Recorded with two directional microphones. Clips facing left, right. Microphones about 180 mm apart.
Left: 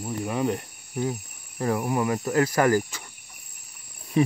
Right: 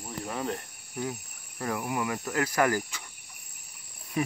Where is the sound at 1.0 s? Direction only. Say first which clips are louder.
Left 6 dB; 30° left (ahead or behind).